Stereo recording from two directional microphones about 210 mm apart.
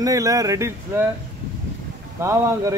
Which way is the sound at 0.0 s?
15° right (ahead or behind).